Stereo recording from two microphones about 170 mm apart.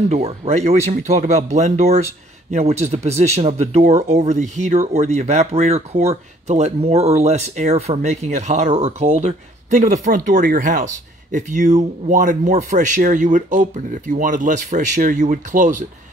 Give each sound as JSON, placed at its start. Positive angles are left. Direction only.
{"t": 0.1, "sound": "speech", "side_deg": -40}